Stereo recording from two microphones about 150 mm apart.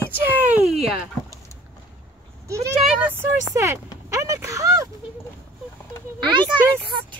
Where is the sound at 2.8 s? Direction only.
5° right (ahead or behind).